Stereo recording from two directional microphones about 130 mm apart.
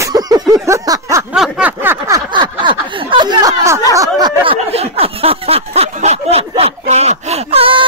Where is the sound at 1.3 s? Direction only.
10° right (ahead or behind).